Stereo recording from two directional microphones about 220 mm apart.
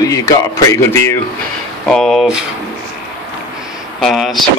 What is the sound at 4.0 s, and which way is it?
Speech, centre (ahead or behind).